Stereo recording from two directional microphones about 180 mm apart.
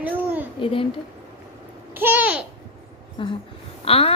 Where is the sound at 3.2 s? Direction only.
30° left (ahead or behind).